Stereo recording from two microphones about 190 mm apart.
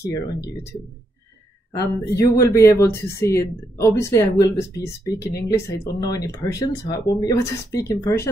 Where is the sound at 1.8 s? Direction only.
15° left (ahead or behind).